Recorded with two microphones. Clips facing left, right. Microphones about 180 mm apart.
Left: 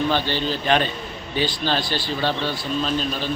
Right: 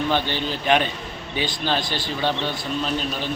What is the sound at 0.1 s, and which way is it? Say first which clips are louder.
A man's voice: left 1 dB; 15° right (ahead or behind).